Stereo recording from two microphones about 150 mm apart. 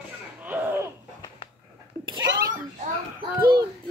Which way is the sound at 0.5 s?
15° right (ahead or behind).